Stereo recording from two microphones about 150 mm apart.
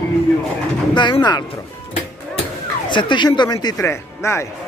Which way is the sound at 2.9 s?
30° left (ahead or behind).